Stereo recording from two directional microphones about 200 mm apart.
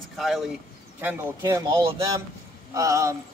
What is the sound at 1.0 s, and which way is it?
Speech, 10° right (ahead or behind).